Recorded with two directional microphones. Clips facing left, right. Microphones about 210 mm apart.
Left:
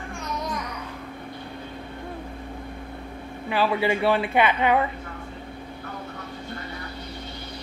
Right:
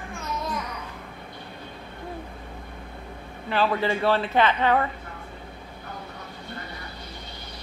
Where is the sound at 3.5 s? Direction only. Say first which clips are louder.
Left 1 dB; 10° left (ahead or behind).